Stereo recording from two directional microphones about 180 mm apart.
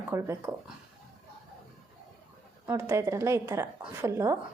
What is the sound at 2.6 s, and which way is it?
Speech, 15° right (ahead or behind).